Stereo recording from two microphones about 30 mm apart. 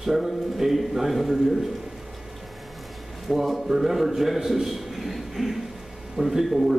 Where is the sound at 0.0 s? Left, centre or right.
Centre.